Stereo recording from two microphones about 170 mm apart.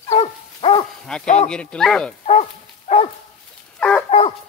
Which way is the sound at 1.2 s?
40° left (ahead or behind).